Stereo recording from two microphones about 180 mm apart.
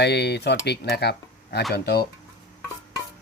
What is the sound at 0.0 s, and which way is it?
Speech, 70° left (ahead or behind).